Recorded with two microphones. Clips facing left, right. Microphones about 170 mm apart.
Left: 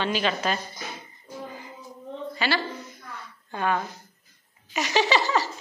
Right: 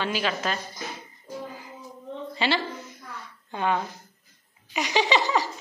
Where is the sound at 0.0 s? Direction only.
5° right (ahead or behind).